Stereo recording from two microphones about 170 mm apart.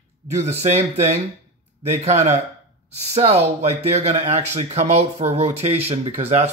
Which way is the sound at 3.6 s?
40° right (ahead or behind).